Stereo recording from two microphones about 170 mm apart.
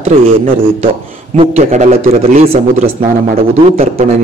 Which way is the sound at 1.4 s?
40° right (ahead or behind).